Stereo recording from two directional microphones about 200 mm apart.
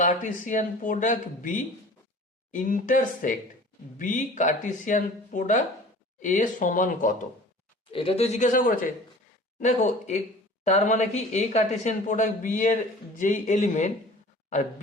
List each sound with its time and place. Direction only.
0.0 s speech: 40° left (ahead or behind)
7.9 s speech: 30° left (ahead or behind)